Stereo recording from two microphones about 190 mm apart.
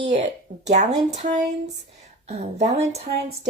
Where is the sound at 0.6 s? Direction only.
40° right (ahead or behind).